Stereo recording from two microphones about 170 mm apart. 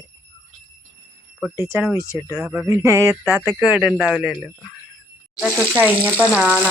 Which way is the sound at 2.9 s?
20° right (ahead or behind).